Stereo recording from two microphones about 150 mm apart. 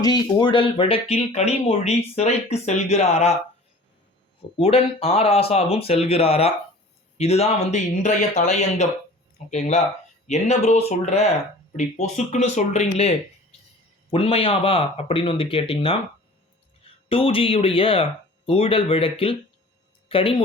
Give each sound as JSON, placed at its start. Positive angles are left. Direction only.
{"t": 0.0, "sound": "speech", "side_deg": 25}
{"t": 4.4, "sound": "speech", "side_deg": 40}
{"t": 14.1, "sound": "speech", "side_deg": 40}